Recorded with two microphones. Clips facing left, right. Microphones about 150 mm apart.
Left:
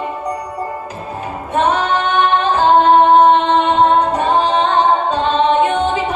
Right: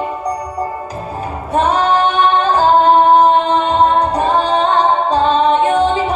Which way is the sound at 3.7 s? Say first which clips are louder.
Even; 35° right (ahead or behind).